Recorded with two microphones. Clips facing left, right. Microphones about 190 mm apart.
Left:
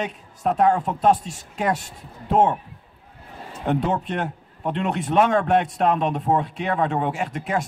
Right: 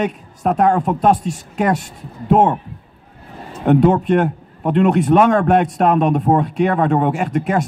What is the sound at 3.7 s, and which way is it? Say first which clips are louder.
A man's voice: right 10 dB; 55° right (ahead or behind).